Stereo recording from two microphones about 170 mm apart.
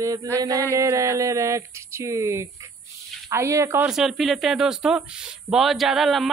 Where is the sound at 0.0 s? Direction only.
20° right (ahead or behind).